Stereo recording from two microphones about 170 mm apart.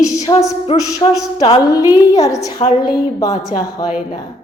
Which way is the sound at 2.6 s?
40° left (ahead or behind).